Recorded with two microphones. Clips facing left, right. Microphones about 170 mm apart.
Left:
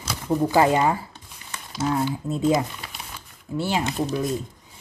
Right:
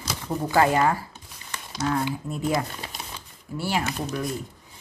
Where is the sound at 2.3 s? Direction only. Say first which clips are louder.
Left 7 dB; 20° left (ahead or behind).